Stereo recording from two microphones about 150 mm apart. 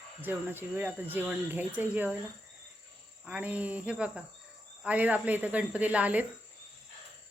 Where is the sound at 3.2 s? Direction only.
10° right (ahead or behind).